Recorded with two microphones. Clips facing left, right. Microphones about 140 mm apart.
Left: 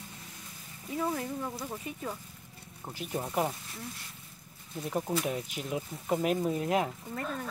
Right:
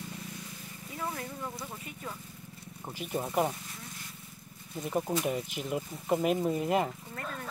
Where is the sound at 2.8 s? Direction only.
Centre (ahead or behind).